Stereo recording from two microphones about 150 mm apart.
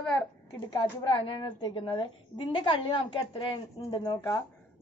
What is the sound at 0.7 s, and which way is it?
A woman's voice, 30° left (ahead or behind).